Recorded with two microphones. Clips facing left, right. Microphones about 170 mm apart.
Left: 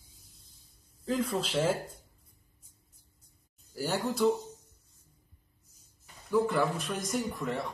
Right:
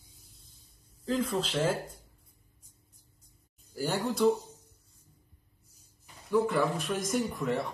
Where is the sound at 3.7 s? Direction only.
10° left (ahead or behind).